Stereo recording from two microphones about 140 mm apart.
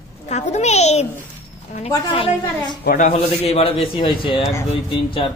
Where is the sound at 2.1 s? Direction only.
35° left (ahead or behind).